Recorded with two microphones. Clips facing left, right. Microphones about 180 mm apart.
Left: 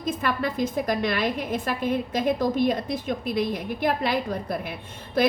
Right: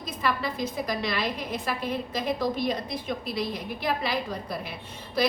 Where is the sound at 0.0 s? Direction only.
50° left (ahead or behind).